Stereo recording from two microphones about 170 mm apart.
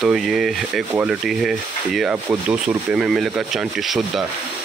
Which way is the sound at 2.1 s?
10° right (ahead or behind).